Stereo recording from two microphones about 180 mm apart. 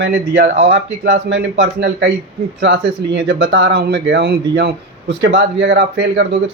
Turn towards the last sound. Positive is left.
turn(degrees=-75)  # may be behind; listen again after turning